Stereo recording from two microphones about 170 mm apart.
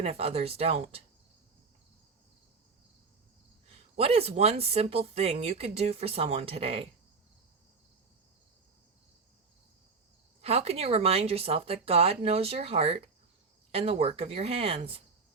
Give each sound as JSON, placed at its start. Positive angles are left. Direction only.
{"t": 0.0, "sound": "speech", "side_deg": -35}
{"t": 3.9, "sound": "speech", "side_deg": -35}
{"t": 10.4, "sound": "speech", "side_deg": -35}